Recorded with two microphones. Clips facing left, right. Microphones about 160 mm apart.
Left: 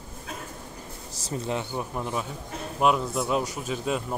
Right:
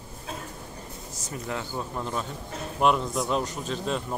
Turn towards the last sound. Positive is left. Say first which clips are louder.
# left 1 dB
turn(degrees=5)  # may be behind; listen again after turning